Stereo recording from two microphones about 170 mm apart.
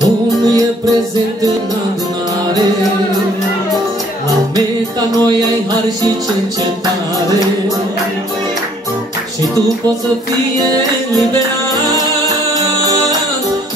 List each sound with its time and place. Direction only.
0.5 s music: 20° right (ahead or behind)
5.1 s music: 20° right (ahead or behind)
11.7 s music: 20° right (ahead or behind)